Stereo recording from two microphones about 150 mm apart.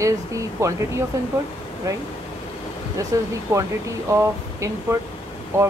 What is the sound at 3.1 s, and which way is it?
A woman's voice, 20° right (ahead or behind).